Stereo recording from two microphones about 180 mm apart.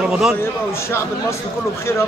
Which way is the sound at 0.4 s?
15° left (ahead or behind).